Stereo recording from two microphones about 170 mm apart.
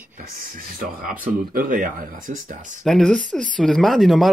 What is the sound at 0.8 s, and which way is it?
Speech, 55° right (ahead or behind).